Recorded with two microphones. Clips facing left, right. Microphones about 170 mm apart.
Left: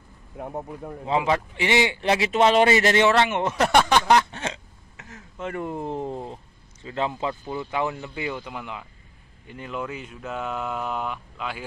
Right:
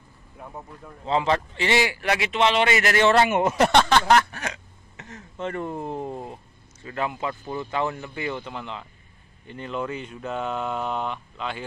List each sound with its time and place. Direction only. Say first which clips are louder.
0.4 s speech: left 7 dB; 55° left (ahead or behind)
1.0 s a man's voice: even; 10° left (ahead or behind); by 3.0 s 30° left (ahead or behind)
3.1 s speech: right 2 dB; 5° right (ahead or behind)
3.7 s a man's voice: left 2 dB; 10° left (ahead or behind)
4.9 s a man's voice: right 3 dB; 5° left (ahead or behind); by 7.5 s 25° left (ahead or behind)
7.5 s speech: right 2 dB; 15° left (ahead or behind)